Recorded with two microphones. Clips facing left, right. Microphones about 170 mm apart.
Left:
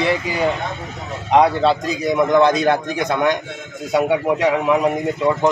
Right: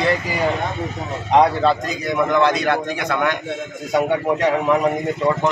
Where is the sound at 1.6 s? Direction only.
10° left (ahead or behind).